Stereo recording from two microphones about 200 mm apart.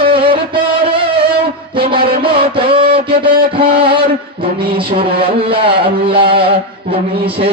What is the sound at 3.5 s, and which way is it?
Music, 25° right (ahead or behind).